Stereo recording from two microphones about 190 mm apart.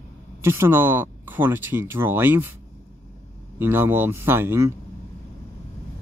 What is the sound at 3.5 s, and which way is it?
Speech, 10° right (ahead or behind).